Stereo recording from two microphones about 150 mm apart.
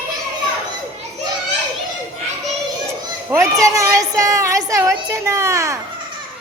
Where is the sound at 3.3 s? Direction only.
20° right (ahead or behind).